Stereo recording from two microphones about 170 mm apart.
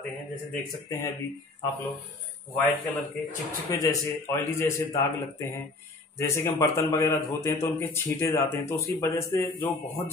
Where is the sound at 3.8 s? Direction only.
20° left (ahead or behind).